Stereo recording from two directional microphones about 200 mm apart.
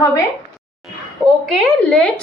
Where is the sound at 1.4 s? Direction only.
5° left (ahead or behind).